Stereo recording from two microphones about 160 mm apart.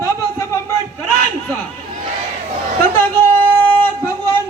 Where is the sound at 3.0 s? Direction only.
15° left (ahead or behind).